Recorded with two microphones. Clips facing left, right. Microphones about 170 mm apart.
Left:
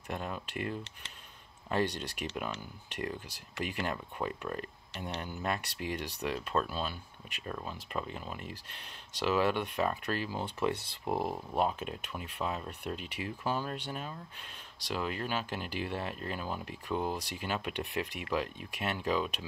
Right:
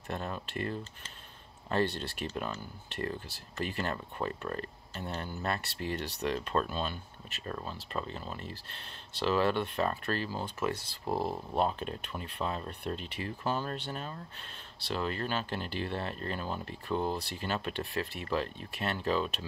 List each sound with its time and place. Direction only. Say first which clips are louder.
0.1 s speech: right 1 dB; 10° left (ahead or behind)